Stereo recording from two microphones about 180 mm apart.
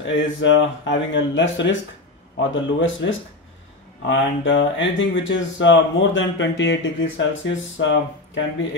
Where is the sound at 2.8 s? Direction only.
90° left.